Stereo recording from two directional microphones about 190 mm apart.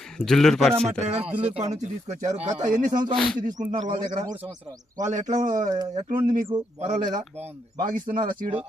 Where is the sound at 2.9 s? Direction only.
20° right (ahead or behind).